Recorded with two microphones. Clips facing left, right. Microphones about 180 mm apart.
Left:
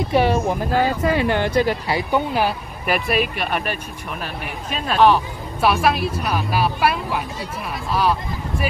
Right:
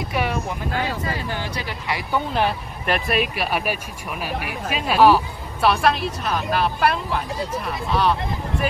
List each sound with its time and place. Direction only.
0.1 s speech: 30° left (ahead or behind)
1.0 s speech: 65° left (ahead or behind)
2.3 s speech: 5° left (ahead or behind)